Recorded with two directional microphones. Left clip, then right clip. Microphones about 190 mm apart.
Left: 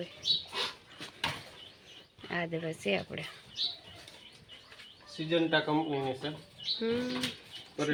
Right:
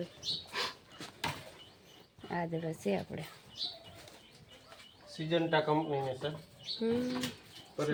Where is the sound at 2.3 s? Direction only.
5° right (ahead or behind).